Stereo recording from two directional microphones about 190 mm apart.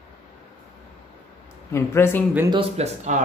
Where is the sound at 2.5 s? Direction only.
30° right (ahead or behind).